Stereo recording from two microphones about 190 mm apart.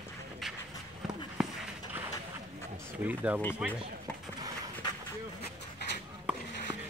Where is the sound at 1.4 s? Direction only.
5° right (ahead or behind).